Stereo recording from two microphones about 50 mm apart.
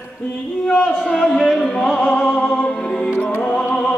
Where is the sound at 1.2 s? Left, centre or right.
Centre.